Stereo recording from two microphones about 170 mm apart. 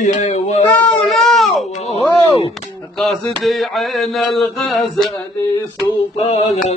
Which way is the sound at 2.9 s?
Centre (ahead or behind).